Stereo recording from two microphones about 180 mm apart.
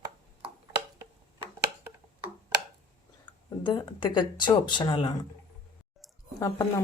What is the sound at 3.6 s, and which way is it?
Speech, 25° left (ahead or behind).